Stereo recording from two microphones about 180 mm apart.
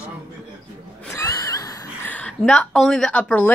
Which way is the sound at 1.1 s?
15° left (ahead or behind).